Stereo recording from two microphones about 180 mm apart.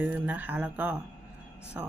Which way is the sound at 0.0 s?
10° right (ahead or behind).